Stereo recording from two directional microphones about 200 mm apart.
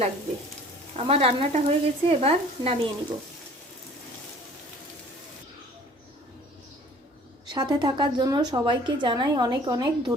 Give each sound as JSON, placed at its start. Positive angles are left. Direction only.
{"t": 0.9, "sound": "speech", "side_deg": -30}
{"t": 7.4, "sound": "a woman's voice", "side_deg": -20}